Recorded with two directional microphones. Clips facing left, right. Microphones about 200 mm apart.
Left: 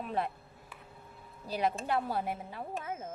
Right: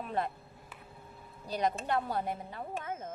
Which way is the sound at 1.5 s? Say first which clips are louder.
Even; 5° left (ahead or behind).